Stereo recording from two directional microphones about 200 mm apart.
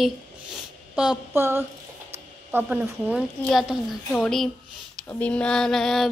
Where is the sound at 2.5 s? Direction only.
10° right (ahead or behind).